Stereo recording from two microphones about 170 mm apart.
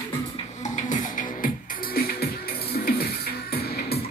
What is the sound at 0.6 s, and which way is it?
Music, 45° left (ahead or behind).